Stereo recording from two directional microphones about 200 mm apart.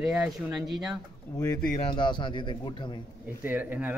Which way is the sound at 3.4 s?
10° right (ahead or behind).